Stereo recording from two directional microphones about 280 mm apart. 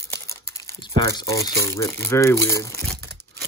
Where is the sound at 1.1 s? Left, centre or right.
Centre.